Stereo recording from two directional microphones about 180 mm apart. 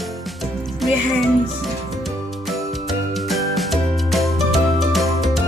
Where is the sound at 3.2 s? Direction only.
Centre (ahead or behind).